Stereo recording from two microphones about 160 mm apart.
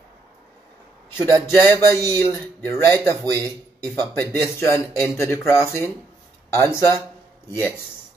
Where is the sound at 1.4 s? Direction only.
15° left (ahead or behind).